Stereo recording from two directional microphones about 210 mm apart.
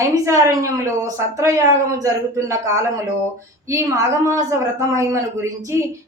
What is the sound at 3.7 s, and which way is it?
Speech, 15° right (ahead or behind).